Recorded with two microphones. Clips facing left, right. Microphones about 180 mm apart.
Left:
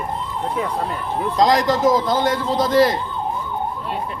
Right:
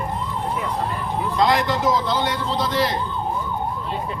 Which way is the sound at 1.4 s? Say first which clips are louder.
Left 4 dB; 40° left (ahead or behind).